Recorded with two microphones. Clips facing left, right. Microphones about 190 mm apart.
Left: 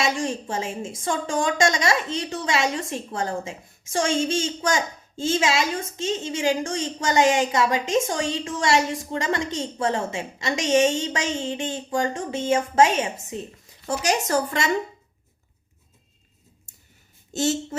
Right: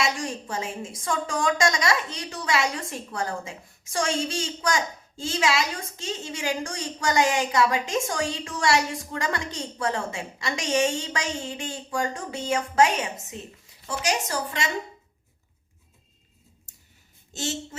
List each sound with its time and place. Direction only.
0.0 s a woman's voice: 25° left (ahead or behind)
13.8 s speech: 50° left (ahead or behind)